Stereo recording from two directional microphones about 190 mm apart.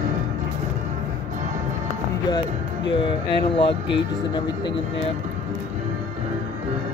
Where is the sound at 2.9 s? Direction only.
25° left (ahead or behind).